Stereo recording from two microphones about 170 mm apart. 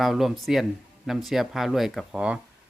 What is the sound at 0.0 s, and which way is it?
Speech, centre (ahead or behind).